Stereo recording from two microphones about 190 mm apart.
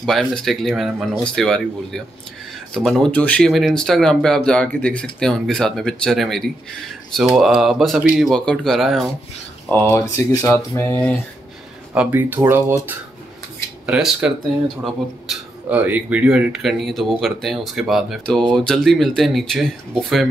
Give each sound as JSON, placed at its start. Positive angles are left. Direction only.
{"t": 0.0, "sound": "speech", "side_deg": 0}
{"t": 9.8, "sound": "speech", "side_deg": 15}
{"t": 11.9, "sound": "speech", "side_deg": -10}
{"t": 13.8, "sound": "speech", "side_deg": -5}